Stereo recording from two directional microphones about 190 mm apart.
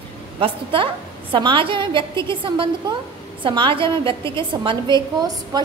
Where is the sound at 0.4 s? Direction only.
25° right (ahead or behind).